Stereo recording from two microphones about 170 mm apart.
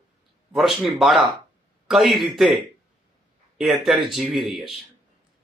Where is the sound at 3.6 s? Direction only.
Centre (ahead or behind).